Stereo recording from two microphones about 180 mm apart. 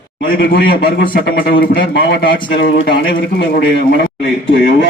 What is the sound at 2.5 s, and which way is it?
Speech, 90° left.